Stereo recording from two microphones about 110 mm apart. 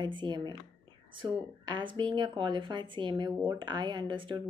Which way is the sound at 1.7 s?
45° right (ahead or behind).